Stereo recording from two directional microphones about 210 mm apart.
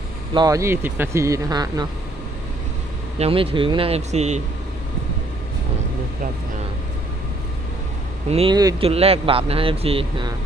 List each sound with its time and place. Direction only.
0.3 s speech: 15° right (ahead or behind)
3.2 s speech: 25° right (ahead or behind)
8.3 s speech: 25° right (ahead or behind)